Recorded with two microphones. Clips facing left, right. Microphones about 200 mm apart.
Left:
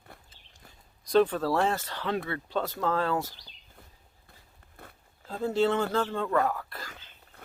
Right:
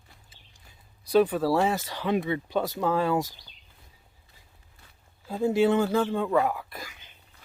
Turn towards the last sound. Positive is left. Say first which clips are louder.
# right 1 dB
turn(degrees=-10)  # may be behind; listen again after turning